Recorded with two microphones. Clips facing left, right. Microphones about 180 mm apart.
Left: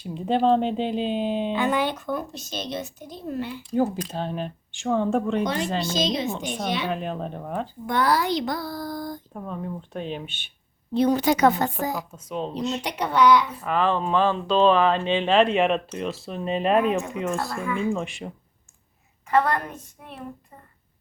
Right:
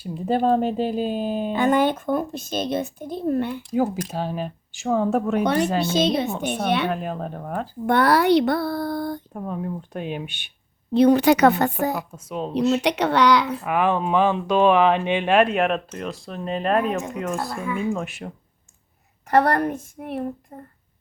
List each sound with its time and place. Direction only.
0.0 s speech: 5° right (ahead or behind)
1.5 s speech: 45° right (ahead or behind)
3.8 s speech: 5° right (ahead or behind)
5.4 s speech: 65° right (ahead or behind)
6.9 s speech: 5° right (ahead or behind)
7.9 s speech: 65° right (ahead or behind)
9.3 s speech: 10° right (ahead or behind)
10.9 s speech: 70° right (ahead or behind)
12.1 s speech: 5° right (ahead or behind)
12.5 s speech: 70° right (ahead or behind)
13.7 s speech: 10° right (ahead or behind)
19.7 s speech: 65° right (ahead or behind)
20.5 s speech: 45° right (ahead or behind)